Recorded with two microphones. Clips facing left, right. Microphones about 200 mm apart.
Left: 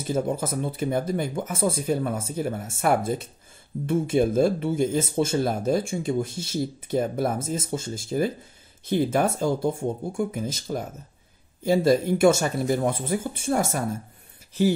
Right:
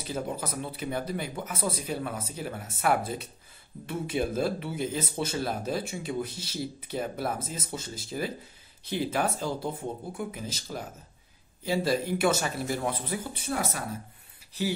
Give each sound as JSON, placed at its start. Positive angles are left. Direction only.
{"t": 0.0, "sound": "speech", "side_deg": 45}